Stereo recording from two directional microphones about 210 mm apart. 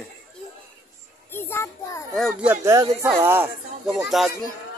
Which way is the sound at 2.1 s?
Centre (ahead or behind).